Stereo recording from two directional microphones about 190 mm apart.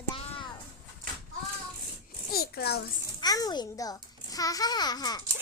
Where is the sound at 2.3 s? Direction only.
55° left (ahead or behind).